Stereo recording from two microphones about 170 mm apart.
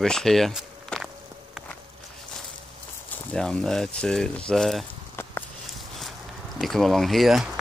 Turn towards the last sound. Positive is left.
turn(degrees=0)  # may be behind; listen again after turning